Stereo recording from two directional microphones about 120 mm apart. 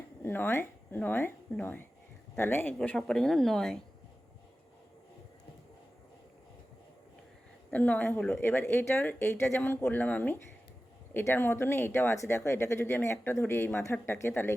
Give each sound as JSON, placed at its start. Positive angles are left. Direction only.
{"t": 0.2, "sound": "speech", "side_deg": 20}
{"t": 7.7, "sound": "speech", "side_deg": 15}